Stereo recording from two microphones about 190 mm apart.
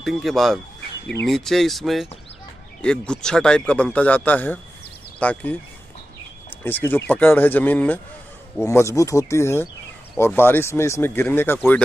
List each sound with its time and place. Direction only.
0.0 s speech: centre (ahead or behind)
6.6 s speech: 10° left (ahead or behind)